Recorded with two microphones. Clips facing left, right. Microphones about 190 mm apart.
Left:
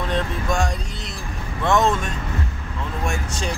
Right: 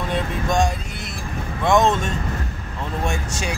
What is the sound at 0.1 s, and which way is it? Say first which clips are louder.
Speech: right 3 dB; 20° right (ahead or behind).